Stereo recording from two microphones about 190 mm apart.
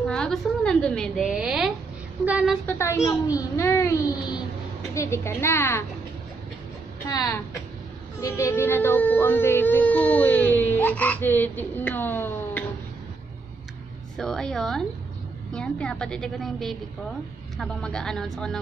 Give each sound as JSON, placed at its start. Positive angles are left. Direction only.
{"t": 0.0, "sound": "a woman's voice", "side_deg": 5}
{"t": 2.6, "sound": "speech", "side_deg": 10}
{"t": 7.1, "sound": "a woman's voice", "side_deg": 20}
{"t": 14.1, "sound": "a woman's voice", "side_deg": 5}